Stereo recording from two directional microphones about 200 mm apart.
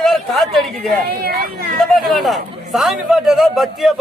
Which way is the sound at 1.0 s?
50° right (ahead or behind).